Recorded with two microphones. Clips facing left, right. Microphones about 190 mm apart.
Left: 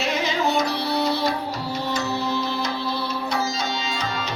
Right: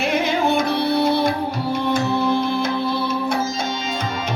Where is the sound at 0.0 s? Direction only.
55° right (ahead or behind).